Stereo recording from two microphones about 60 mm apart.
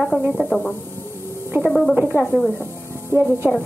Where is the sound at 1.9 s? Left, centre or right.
Right.